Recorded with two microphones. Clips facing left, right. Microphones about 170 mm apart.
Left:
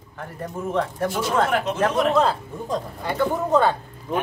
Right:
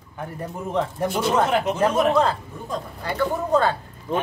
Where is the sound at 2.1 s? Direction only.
5° left (ahead or behind).